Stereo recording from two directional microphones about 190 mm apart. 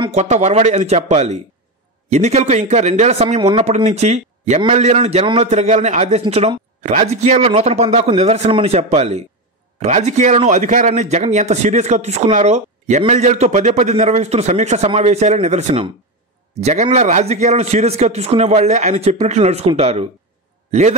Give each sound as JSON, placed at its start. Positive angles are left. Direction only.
{"t": 0.1, "sound": "a man's voice", "side_deg": -35}